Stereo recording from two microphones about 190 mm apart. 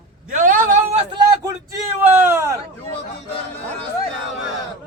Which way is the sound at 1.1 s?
20° right (ahead or behind).